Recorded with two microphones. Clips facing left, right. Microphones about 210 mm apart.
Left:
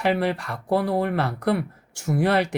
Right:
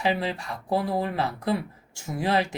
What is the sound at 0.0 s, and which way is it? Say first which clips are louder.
Speech: left 4 dB; 65° left (ahead or behind).